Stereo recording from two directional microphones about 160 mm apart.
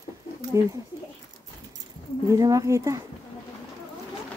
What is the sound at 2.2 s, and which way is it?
Speech, 20° right (ahead or behind).